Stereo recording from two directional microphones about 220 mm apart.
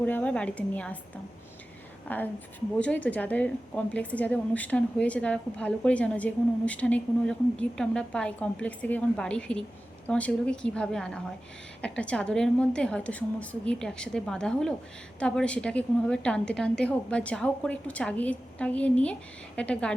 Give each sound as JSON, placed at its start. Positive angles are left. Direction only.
{"t": 0.0, "sound": "a woman's voice", "side_deg": 5}
{"t": 2.0, "sound": "a woman's voice", "side_deg": 10}